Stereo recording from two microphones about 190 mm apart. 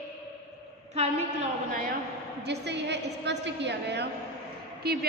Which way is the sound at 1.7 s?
50° right (ahead or behind).